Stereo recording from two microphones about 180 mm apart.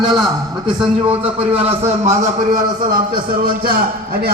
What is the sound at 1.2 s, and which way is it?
A man's voice, 35° right (ahead or behind).